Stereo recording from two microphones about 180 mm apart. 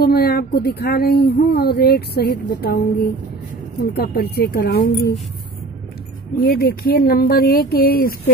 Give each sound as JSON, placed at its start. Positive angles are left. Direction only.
{"t": 0.0, "sound": "speech", "side_deg": 60}
{"t": 6.4, "sound": "speech", "side_deg": 55}